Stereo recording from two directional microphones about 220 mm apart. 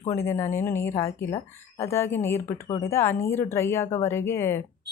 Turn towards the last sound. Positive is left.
turn(degrees=10)  # may be behind; listen again after turning